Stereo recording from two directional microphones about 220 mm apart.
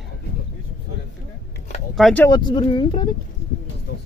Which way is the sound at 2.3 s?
20° left (ahead or behind).